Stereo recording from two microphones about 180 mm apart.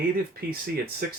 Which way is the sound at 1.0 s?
55° right (ahead or behind).